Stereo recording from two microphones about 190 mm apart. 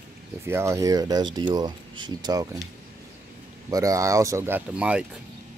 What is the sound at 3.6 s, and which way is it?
Speech, 15° right (ahead or behind).